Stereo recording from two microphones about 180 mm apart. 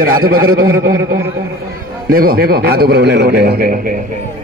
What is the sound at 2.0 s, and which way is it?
A man's voice, 55° right (ahead or behind).